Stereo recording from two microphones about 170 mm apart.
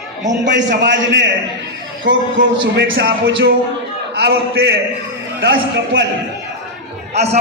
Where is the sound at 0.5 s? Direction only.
90° right.